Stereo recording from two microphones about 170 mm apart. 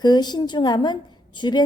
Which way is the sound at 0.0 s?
25° left (ahead or behind).